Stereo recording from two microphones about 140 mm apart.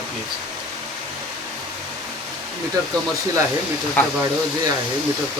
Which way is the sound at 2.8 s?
25° right (ahead or behind).